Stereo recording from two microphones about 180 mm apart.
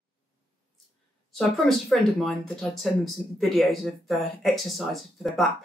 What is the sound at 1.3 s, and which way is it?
Speech, centre (ahead or behind).